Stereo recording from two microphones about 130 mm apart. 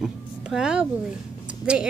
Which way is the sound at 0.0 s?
5° right (ahead or behind).